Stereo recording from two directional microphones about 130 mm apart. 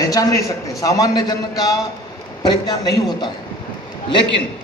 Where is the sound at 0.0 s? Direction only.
30° left (ahead or behind).